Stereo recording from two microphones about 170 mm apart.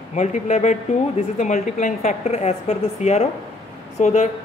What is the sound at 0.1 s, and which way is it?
A woman's voice, 45° left (ahead or behind).